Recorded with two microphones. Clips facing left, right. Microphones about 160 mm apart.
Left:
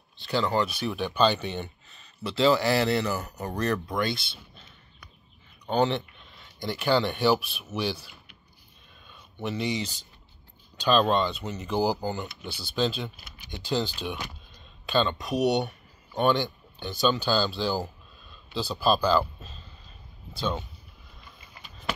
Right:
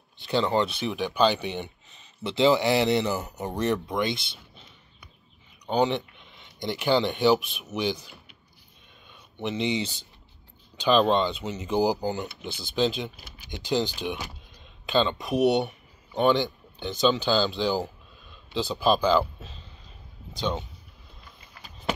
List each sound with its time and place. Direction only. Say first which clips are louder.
0.2 s speech: right 2 dB; 20° right (ahead or behind)
9.1 s speech: right 1 dB; 20° right (ahead or behind)